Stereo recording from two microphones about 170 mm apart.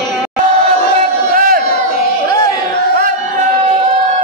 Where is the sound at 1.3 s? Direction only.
55° right (ahead or behind).